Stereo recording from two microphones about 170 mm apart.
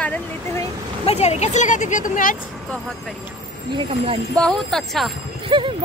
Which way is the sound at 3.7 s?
35° right (ahead or behind).